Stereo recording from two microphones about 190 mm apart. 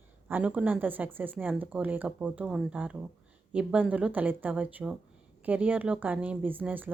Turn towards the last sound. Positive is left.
turn(degrees=-10)  # may be behind; listen again after turning